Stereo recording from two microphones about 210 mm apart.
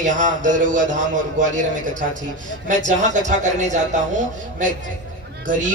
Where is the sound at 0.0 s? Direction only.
35° right (ahead or behind).